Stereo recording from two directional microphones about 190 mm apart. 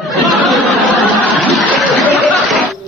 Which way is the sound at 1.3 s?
Centre (ahead or behind).